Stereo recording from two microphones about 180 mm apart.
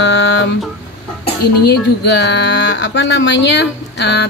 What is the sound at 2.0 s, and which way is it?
A woman's voice, 75° left (ahead or behind).